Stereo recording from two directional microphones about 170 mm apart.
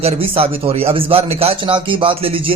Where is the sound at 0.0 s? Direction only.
35° right (ahead or behind).